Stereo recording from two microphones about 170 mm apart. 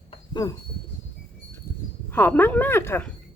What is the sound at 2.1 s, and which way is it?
Speech, 10° left (ahead or behind).